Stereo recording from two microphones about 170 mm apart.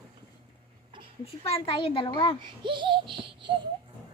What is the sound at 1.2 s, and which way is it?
Speech, 35° left (ahead or behind).